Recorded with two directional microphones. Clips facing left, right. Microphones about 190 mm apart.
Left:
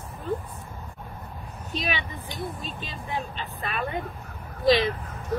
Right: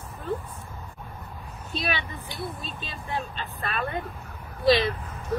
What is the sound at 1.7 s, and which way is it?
Speech, 15° left (ahead or behind).